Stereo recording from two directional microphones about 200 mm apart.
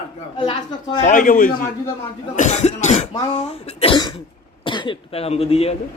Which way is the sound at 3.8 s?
25° left (ahead or behind).